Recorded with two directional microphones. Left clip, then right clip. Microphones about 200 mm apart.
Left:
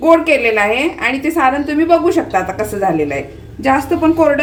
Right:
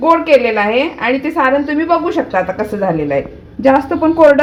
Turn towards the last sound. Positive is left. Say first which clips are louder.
# right 2 dB
turn(degrees=-30)  # may be behind; listen again after turning